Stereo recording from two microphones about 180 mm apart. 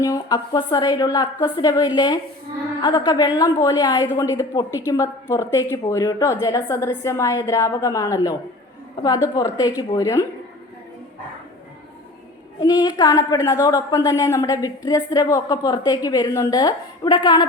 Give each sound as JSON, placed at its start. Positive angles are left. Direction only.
{"t": 0.0, "sound": "a woman's voice", "side_deg": 20}
{"t": 12.5, "sound": "a woman's voice", "side_deg": 25}